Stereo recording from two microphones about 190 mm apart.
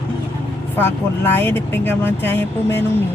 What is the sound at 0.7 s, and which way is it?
Speech, 10° left (ahead or behind).